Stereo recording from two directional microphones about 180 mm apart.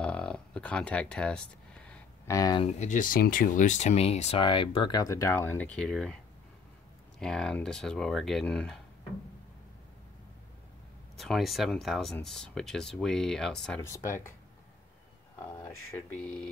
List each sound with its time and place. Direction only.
0.0 s a sound: 5° left (ahead or behind)
2.2 s speech: 20° left (ahead or behind)
2.6 s speech: 40° left (ahead or behind); by 6.1 s 5° left (ahead or behind)
7.2 s speech: 5° left (ahead or behind)
11.1 s speech: centre (ahead or behind)
13.7 s speech: 15° left (ahead or behind)